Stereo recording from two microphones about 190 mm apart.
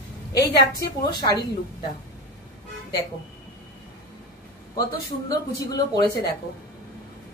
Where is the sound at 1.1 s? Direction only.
20° left (ahead or behind).